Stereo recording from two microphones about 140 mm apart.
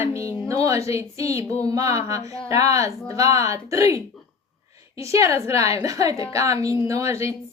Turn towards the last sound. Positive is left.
turn(degrees=-20)  # may be behind; listen again after turning